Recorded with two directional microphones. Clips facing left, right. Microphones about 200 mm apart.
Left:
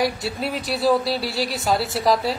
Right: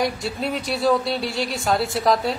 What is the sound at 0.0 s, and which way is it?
A man's voice, centre (ahead or behind).